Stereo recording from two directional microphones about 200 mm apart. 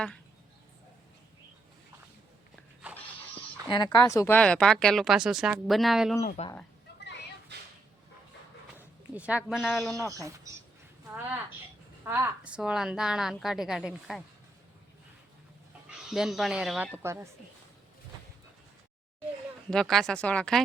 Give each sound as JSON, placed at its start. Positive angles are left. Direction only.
{"t": 3.8, "sound": "speech", "side_deg": 15}
{"t": 6.2, "sound": "speech", "side_deg": 35}
{"t": 8.8, "sound": "speech", "side_deg": -5}
{"t": 10.1, "sound": "speech", "side_deg": -15}
{"t": 15.9, "sound": "speech", "side_deg": -5}
{"t": 19.7, "sound": "speech", "side_deg": 0}